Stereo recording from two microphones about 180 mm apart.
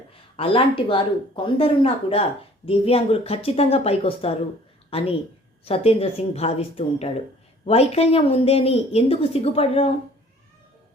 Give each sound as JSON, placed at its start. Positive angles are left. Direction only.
{"t": 0.3, "sound": "speech", "side_deg": 30}